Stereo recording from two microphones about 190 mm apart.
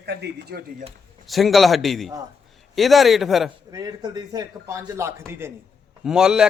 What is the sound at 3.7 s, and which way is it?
A man's voice, 20° right (ahead or behind).